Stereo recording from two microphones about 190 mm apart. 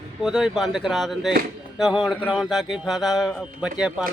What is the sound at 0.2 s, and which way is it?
A man's voice, centre (ahead or behind).